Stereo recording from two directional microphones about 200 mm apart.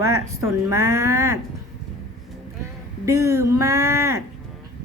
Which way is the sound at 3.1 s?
15° right (ahead or behind).